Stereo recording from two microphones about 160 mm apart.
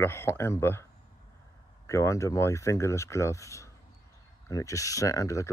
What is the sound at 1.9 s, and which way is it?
Speech, 20° left (ahead or behind).